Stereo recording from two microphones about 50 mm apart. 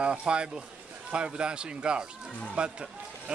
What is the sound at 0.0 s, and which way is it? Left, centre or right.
Speech, right.